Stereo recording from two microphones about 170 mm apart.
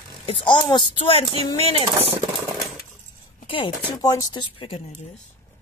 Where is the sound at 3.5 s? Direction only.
25° left (ahead or behind).